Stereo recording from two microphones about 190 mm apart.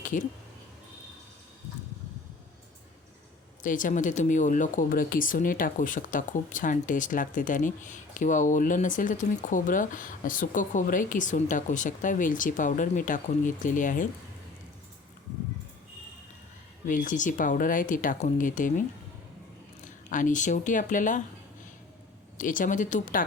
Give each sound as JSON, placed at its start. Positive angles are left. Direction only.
{"t": 3.6, "sound": "speech", "side_deg": 45}
{"t": 16.8, "sound": "speech", "side_deg": 45}
{"t": 22.4, "sound": "speech", "side_deg": 45}